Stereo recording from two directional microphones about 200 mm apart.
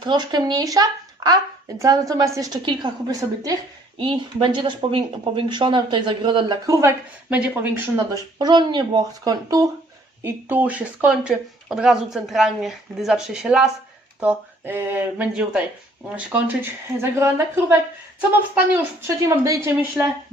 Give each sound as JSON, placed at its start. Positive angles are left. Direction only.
{"t": 0.0, "sound": "a woman's voice", "side_deg": -20}